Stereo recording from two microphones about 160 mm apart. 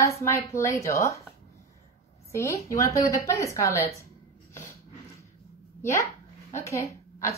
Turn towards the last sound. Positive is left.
turn(degrees=20)  # may be behind; listen again after turning